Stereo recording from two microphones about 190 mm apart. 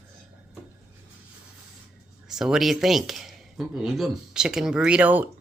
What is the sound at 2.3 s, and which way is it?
A man's voice, centre (ahead or behind).